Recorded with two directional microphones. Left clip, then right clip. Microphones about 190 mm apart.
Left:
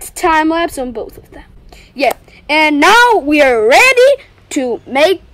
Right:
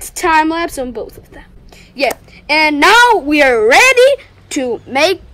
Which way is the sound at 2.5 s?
35° left (ahead or behind).